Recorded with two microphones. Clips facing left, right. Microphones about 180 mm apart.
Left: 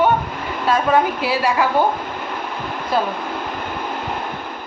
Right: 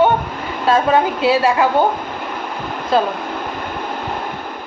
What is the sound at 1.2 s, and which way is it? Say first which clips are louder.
Speech: right 4 dB; 25° right (ahead or behind).